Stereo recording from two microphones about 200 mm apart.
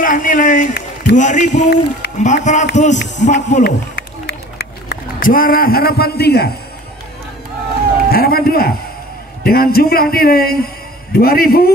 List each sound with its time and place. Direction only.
0.0 s speech: 40° left (ahead or behind)
1.7 s a man's voice: 55° left (ahead or behind)
2.1 s speech: 35° left (ahead or behind)
3.6 s run: 55° left (ahead or behind)
8.1 s a man's voice: 50° left (ahead or behind)